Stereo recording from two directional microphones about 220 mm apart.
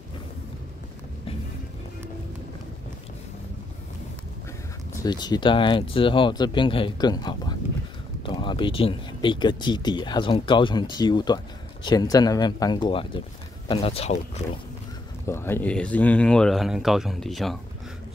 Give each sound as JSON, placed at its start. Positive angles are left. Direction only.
{"t": 5.0, "sound": "speech", "side_deg": 20}
{"t": 15.2, "sound": "speech", "side_deg": 10}